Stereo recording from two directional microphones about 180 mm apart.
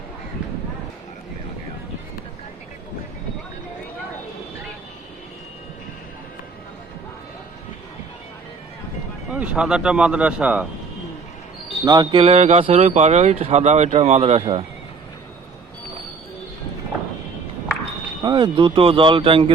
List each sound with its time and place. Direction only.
9.3 s speech: 5° right (ahead or behind)
11.9 s speech: 25° right (ahead or behind)
18.2 s speech: 25° right (ahead or behind)